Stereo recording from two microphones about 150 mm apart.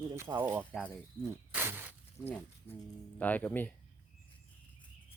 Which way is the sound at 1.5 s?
15° right (ahead or behind).